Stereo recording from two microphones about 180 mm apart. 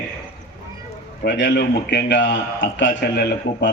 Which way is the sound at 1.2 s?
75° left (ahead or behind).